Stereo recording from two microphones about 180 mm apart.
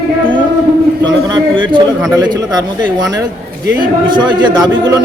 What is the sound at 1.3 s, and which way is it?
A man's voice, 25° right (ahead or behind).